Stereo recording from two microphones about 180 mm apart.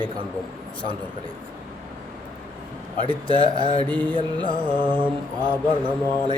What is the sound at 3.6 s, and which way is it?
A man's voice, 25° right (ahead or behind).